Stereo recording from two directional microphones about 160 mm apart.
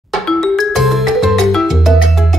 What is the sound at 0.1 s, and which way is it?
Music, centre (ahead or behind).